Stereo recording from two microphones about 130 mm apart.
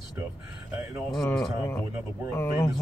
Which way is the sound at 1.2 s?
5° left (ahead or behind).